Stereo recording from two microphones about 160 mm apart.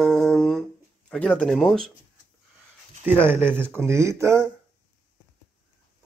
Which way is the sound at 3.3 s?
15° right (ahead or behind).